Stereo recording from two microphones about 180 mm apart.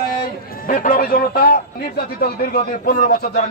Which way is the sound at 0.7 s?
50° left (ahead or behind).